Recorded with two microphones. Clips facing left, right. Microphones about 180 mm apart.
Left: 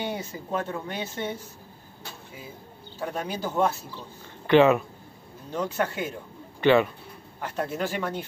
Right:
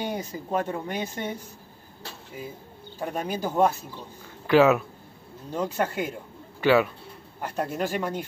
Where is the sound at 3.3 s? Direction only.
10° right (ahead or behind).